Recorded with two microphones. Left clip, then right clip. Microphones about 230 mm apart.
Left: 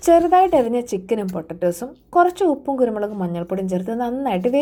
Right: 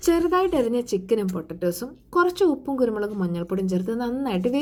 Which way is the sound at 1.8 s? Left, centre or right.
Left.